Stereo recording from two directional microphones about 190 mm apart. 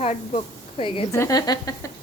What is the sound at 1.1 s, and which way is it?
Speech, 15° left (ahead or behind).